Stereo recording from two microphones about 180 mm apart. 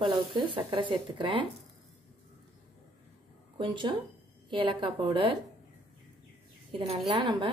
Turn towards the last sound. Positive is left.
turn(degrees=-30)  # may be behind; listen again after turning